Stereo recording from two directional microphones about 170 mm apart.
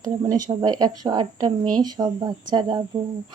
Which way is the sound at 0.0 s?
20° right (ahead or behind).